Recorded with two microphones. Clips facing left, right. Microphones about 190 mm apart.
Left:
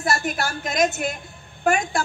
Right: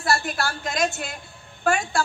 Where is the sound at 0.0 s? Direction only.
20° left (ahead or behind).